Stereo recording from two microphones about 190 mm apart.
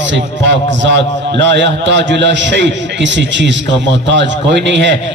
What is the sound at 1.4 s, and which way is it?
A man's voice, 70° right (ahead or behind).